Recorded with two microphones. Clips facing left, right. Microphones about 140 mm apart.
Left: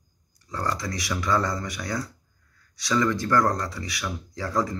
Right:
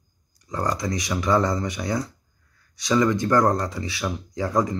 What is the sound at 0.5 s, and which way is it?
Speech, 20° right (ahead or behind).